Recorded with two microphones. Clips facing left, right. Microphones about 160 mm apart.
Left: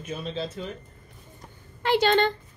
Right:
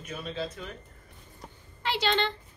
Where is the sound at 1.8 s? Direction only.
50° left (ahead or behind).